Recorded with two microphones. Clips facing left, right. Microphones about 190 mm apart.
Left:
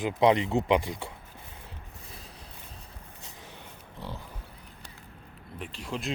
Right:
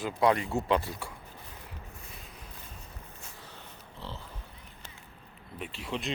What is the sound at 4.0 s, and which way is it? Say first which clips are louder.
Pig: left 3 dB; 15° left (ahead or behind).